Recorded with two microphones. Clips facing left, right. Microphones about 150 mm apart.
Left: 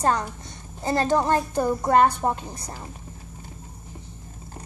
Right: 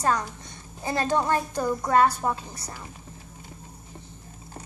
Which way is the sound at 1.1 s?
25° left (ahead or behind).